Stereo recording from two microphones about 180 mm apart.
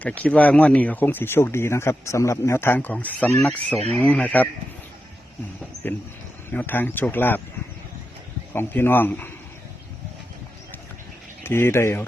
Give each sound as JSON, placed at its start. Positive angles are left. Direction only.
{"t": 0.0, "sound": "speech", "side_deg": 10}
{"t": 5.7, "sound": "a sound", "side_deg": -35}
{"t": 6.5, "sound": "speech", "side_deg": 10}
{"t": 8.5, "sound": "speech", "side_deg": 10}
{"t": 11.4, "sound": "speech", "side_deg": 15}